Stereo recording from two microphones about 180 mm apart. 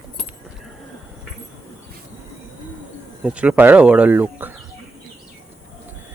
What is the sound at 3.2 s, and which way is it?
Speech, 5° right (ahead or behind).